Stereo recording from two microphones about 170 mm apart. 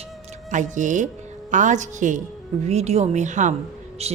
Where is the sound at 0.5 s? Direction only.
50° right (ahead or behind).